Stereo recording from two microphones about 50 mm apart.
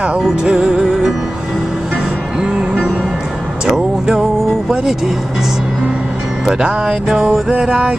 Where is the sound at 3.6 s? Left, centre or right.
Centre.